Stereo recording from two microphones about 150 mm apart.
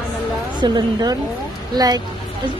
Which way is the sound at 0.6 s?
30° right (ahead or behind).